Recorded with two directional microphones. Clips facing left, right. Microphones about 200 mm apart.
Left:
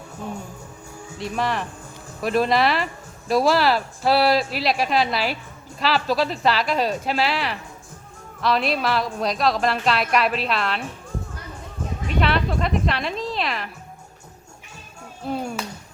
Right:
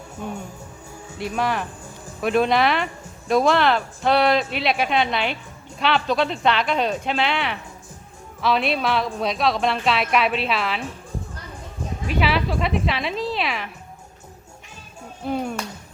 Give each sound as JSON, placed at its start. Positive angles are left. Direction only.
{"t": 1.2, "sound": "speech", "side_deg": 0}
{"t": 12.0, "sound": "speech", "side_deg": 0}
{"t": 15.3, "sound": "a sound", "side_deg": 0}